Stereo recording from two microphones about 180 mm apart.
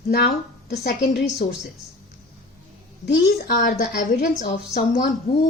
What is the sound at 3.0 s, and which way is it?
A woman's voice, 60° left (ahead or behind).